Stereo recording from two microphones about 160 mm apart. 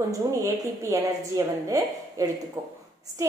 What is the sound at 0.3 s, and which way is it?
A woman's voice, 20° right (ahead or behind).